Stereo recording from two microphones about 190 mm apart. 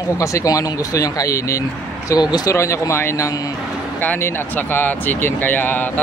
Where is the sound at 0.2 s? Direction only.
15° left (ahead or behind).